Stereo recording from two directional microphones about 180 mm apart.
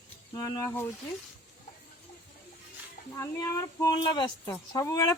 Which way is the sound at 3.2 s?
15° left (ahead or behind).